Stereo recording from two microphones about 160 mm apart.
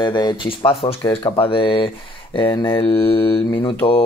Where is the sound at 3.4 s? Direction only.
30° left (ahead or behind).